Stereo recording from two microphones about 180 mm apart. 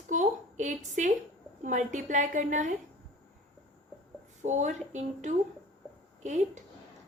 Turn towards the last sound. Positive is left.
turn(degrees=-40)  # may be behind; listen again after turning